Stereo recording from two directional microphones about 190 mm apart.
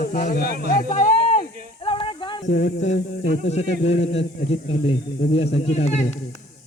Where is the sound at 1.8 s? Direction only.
25° left (ahead or behind).